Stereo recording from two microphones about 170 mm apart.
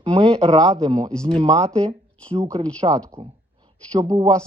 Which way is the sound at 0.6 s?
20° right (ahead or behind).